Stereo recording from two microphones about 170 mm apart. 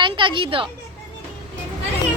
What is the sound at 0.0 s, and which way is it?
Speech, 30° right (ahead or behind).